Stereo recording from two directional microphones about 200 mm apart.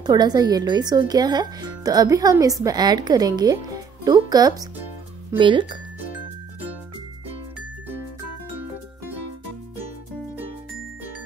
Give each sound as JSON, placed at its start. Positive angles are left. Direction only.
{"t": 0.0, "sound": "speech", "side_deg": -20}